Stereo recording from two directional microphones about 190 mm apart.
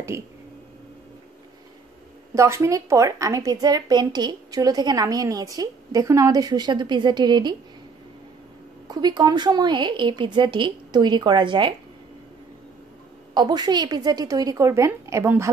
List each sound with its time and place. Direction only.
2.3 s a woman's voice: 15° right (ahead or behind)
8.8 s a woman's voice: 20° right (ahead or behind)
13.3 s a woman's voice: 20° right (ahead or behind)